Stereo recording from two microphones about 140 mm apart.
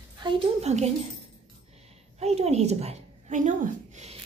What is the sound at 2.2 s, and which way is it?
A woman's voice, 50° right (ahead or behind).